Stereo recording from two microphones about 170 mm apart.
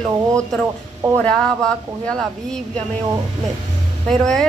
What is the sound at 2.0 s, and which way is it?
Speech, 5° left (ahead or behind).